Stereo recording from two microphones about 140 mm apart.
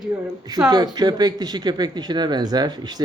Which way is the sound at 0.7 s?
30° right (ahead or behind).